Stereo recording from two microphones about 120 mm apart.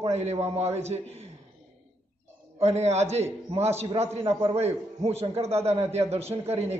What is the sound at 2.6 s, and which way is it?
A man's voice, 65° right (ahead or behind).